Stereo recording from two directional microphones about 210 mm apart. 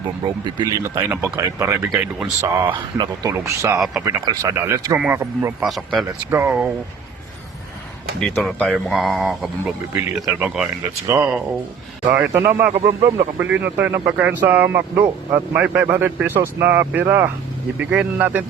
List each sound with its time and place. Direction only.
0.6 s speech: 10° right (ahead or behind)
3.8 s speech: centre (ahead or behind)
4.3 s speech: 15° right (ahead or behind)
5.6 s speech: centre (ahead or behind)
6.1 s speech: 10° right (ahead or behind)
8.2 s speech: centre (ahead or behind)